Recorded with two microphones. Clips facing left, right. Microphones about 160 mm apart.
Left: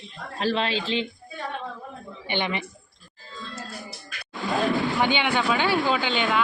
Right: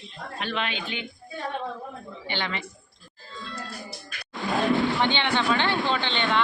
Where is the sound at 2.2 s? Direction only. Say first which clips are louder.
Left 4 dB; 20° left (ahead or behind).